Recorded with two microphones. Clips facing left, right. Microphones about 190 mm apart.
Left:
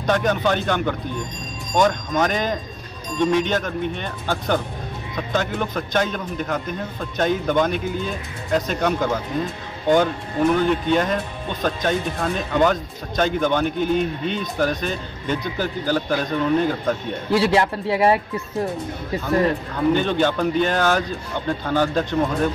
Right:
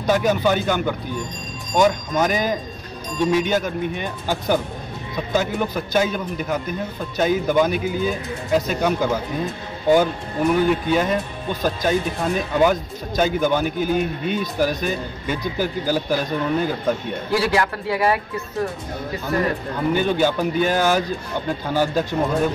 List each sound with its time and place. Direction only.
0.0 s a man's voice: 5° right (ahead or behind)
10.5 s speech: 5° right (ahead or behind)
17.3 s a man's voice: 25° left (ahead or behind)
19.9 s speech: 10° right (ahead or behind)